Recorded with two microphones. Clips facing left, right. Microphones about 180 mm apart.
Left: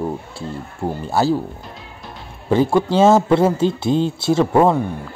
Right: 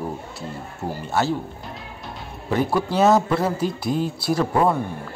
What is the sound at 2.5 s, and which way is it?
Speech, 25° left (ahead or behind).